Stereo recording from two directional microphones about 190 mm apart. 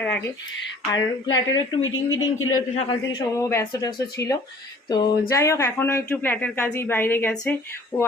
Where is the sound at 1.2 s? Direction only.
20° left (ahead or behind).